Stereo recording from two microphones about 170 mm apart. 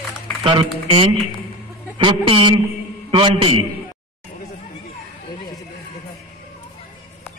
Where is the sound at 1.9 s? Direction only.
30° right (ahead or behind).